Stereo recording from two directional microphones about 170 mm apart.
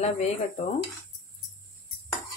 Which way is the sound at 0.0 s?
40° left (ahead or behind).